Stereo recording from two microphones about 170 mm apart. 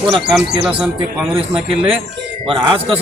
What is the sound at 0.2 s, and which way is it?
Speech, 5° right (ahead or behind).